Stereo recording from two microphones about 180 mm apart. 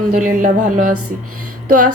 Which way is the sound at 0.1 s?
45° right (ahead or behind).